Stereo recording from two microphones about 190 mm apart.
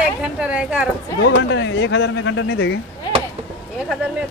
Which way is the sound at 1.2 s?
70° left (ahead or behind).